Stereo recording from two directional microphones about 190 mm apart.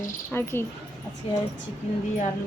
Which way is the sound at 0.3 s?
10° left (ahead or behind).